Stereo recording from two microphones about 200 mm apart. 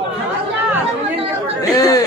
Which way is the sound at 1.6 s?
15° left (ahead or behind).